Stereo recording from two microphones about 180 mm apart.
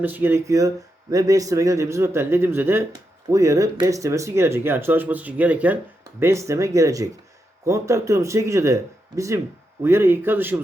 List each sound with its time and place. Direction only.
0.0 s speech: 10° right (ahead or behind)